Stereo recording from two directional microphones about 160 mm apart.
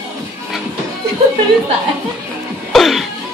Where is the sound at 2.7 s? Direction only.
Centre (ahead or behind).